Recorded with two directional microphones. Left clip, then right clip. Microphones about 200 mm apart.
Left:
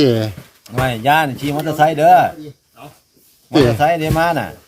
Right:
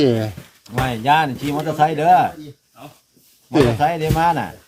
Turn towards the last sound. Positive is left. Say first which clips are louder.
# left 1 dB
turn(degrees=50)  # may be behind; listen again after turning